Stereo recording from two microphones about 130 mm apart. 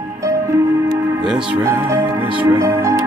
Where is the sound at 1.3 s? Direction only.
5° right (ahead or behind).